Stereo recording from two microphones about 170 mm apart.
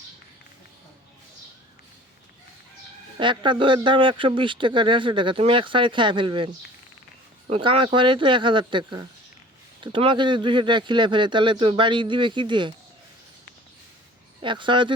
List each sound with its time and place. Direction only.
3.2 s speech: 30° right (ahead or behind)
7.5 s speech: 30° right (ahead or behind)
14.4 s speech: 30° right (ahead or behind)